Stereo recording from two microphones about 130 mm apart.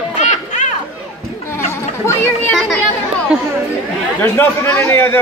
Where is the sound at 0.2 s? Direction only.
65° left (ahead or behind).